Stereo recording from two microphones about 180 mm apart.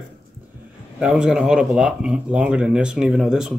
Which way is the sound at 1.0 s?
5° right (ahead or behind).